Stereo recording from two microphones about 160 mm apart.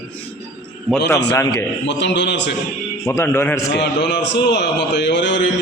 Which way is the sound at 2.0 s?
90° left.